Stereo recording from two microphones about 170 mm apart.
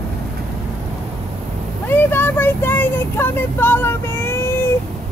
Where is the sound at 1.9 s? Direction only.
10° left (ahead or behind).